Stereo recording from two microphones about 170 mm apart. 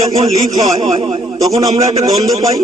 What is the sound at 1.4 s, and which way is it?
Speech, 20° right (ahead or behind).